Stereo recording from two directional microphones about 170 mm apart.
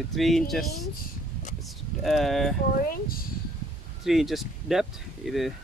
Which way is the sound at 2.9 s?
60° left (ahead or behind).